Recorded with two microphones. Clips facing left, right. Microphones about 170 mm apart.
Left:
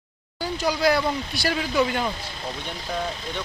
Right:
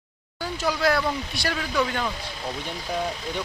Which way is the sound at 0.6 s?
Centre (ahead or behind).